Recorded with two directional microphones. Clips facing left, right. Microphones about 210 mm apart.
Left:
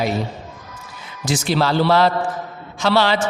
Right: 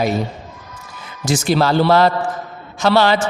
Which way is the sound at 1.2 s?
45° right (ahead or behind).